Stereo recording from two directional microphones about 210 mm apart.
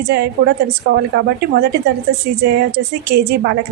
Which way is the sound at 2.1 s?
50° right (ahead or behind).